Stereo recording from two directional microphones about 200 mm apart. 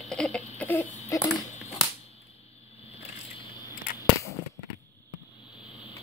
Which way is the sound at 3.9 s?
45° left (ahead or behind).